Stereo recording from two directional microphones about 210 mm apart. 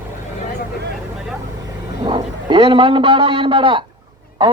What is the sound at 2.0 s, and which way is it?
A man's voice, 20° right (ahead or behind).